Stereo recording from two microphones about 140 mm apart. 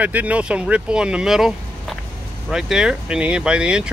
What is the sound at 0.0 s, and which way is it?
Speech, 10° right (ahead or behind).